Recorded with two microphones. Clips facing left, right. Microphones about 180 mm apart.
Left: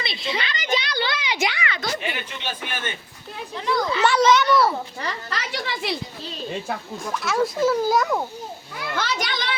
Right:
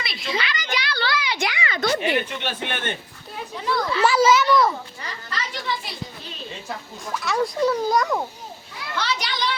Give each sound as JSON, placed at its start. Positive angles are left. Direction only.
{"t": 0.0, "sound": "a sound", "side_deg": 25}
{"t": 1.8, "sound": "speech", "side_deg": -70}
{"t": 3.7, "sound": "speech", "side_deg": 20}
{"t": 4.0, "sound": "a child's voice", "side_deg": -5}
{"t": 5.0, "sound": "speech", "side_deg": 75}
{"t": 7.0, "sound": "a child's voice", "side_deg": 0}
{"t": 9.0, "sound": "children playing", "side_deg": 50}